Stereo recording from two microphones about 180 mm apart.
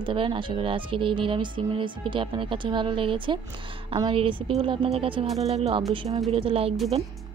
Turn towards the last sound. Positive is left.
turn(degrees=-30)  # may be behind; listen again after turning